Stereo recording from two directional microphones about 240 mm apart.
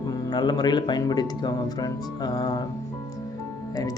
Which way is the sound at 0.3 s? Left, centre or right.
Centre.